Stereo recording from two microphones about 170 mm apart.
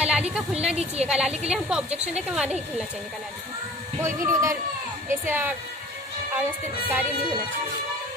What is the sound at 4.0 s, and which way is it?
A man's voice, 15° right (ahead or behind).